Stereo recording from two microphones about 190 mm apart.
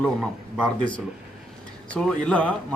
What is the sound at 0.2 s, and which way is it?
Speech, 5° right (ahead or behind).